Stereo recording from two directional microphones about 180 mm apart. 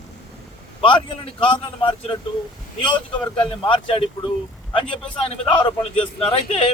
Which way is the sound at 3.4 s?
30° left (ahead or behind).